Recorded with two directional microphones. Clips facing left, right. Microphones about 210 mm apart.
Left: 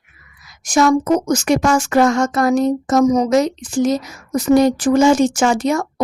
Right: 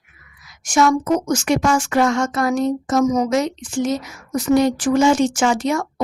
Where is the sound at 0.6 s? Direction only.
35° left (ahead or behind).